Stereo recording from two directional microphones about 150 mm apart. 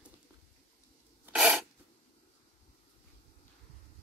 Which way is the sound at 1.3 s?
5° right (ahead or behind).